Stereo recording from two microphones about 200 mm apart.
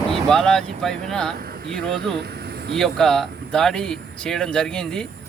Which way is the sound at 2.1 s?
55° right (ahead or behind).